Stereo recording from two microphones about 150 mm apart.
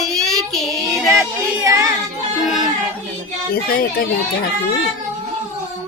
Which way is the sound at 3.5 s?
80° left.